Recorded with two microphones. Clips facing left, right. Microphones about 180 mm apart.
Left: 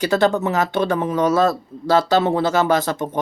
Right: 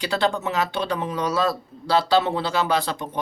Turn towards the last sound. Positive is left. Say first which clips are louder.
# left 5 dB
turn(degrees=45)  # may be behind; listen again after turning